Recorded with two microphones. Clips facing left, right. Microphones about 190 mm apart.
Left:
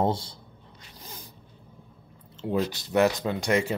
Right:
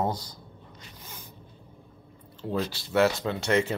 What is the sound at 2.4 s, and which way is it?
Speech, 20° left (ahead or behind).